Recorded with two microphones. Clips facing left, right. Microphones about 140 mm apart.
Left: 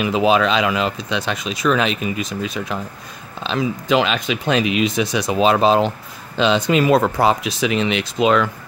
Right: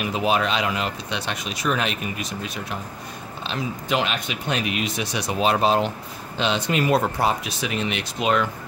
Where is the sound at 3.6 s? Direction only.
90° left.